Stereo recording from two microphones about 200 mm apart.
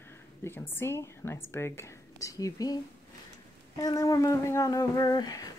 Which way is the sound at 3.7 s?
20° left (ahead or behind).